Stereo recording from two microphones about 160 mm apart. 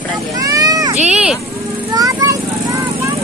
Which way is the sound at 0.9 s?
45° right (ahead or behind).